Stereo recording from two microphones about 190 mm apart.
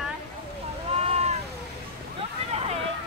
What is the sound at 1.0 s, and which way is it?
Vehicle, 35° right (ahead or behind).